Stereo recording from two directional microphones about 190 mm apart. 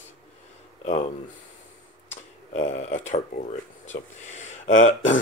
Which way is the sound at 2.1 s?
40° left (ahead or behind).